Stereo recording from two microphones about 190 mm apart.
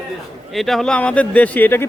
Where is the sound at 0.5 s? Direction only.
Centre (ahead or behind).